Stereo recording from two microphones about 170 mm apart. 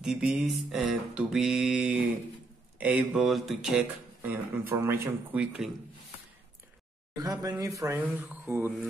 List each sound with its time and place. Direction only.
0.0 s mantra: 5° right (ahead or behind)
2.8 s speech: 10° right (ahead or behind)
7.2 s speech: 20° right (ahead or behind)